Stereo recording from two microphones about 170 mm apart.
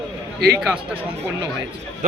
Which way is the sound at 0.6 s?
10° right (ahead or behind).